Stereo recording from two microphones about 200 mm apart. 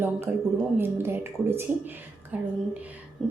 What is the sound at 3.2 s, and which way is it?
Music, 5° left (ahead or behind).